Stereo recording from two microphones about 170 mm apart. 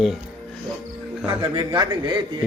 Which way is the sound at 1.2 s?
30° right (ahead or behind).